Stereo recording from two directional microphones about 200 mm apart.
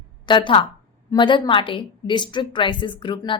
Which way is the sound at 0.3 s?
25° left (ahead or behind).